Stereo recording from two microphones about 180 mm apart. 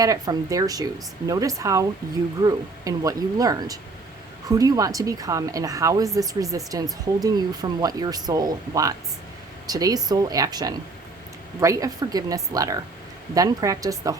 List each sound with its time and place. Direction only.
0.0 s a woman's voice: 20° right (ahead or behind)